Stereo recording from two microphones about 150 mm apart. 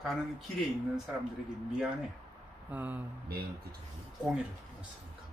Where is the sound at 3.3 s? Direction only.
90° right.